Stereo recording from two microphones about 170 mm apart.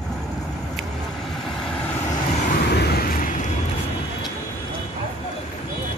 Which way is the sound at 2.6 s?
75° left (ahead or behind).